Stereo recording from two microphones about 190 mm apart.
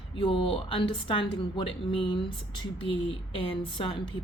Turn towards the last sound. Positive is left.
turn(degrees=25)  # may be behind; listen again after turning